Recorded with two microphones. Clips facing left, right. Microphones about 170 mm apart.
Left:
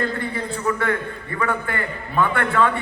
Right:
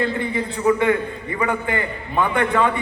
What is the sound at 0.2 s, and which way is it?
A man's voice, 15° right (ahead or behind).